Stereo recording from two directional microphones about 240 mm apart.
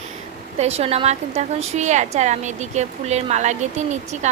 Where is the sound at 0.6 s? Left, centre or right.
Right.